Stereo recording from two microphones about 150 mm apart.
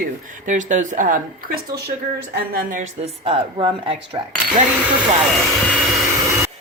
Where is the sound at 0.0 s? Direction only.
55° right (ahead or behind).